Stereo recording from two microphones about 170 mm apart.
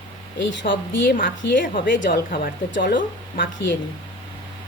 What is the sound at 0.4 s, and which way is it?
Speech, 90° left.